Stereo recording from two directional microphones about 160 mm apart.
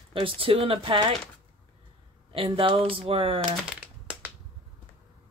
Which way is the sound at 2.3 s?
35° right (ahead or behind).